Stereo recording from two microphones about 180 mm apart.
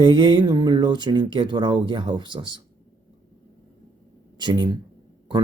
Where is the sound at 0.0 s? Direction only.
25° right (ahead or behind).